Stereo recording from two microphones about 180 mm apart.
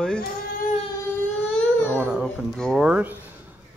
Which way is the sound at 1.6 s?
10° left (ahead or behind).